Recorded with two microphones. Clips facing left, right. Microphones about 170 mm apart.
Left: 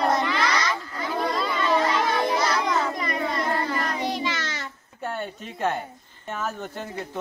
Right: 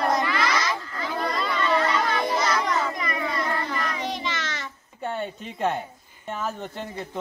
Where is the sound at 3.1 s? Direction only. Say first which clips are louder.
Left 1 dB; 30° left (ahead or behind).